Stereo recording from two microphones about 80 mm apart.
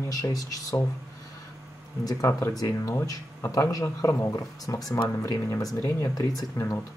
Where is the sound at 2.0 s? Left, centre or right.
Left.